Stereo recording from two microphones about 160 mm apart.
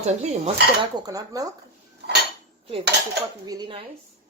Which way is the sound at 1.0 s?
20° right (ahead or behind).